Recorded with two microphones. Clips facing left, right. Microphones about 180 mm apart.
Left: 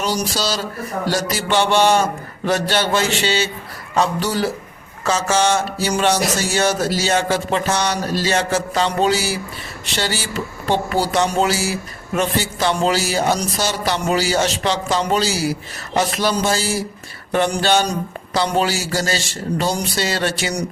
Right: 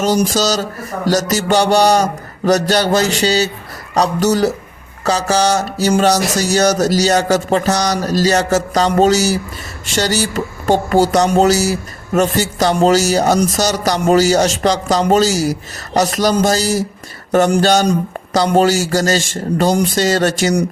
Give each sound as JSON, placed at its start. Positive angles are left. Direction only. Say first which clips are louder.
{"t": 0.0, "sound": "speech", "louder": "right 7 dB", "side_deg": -45}